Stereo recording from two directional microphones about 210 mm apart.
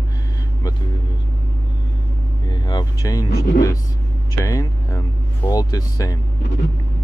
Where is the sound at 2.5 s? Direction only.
20° left (ahead or behind).